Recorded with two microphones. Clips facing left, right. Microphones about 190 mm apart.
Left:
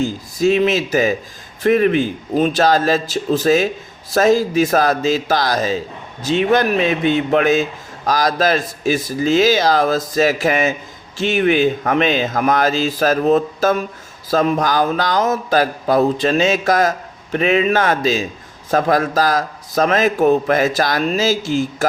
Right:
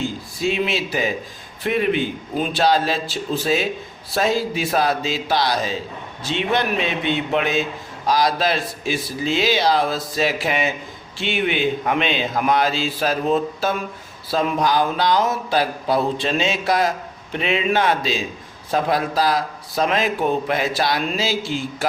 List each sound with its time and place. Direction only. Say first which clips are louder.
0.0 s a man's voice: left 6 dB; 40° left (ahead or behind)